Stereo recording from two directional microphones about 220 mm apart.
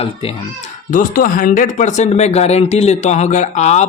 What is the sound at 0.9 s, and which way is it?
Speech, 40° left (ahead or behind).